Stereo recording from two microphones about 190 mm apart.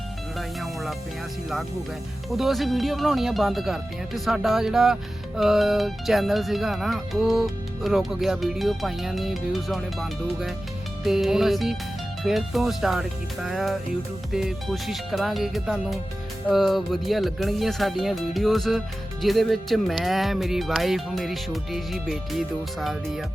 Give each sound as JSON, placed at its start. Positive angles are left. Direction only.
{"t": 0.3, "sound": "music", "side_deg": 0}
{"t": 2.3, "sound": "speech", "side_deg": 0}